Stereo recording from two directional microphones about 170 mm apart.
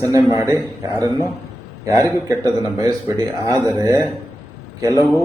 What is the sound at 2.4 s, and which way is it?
A man's voice, 20° right (ahead or behind).